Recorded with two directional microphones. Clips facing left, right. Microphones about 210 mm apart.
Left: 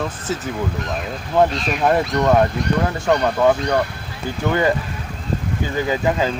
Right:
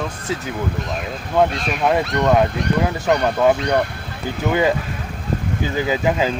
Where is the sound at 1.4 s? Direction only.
Centre (ahead or behind).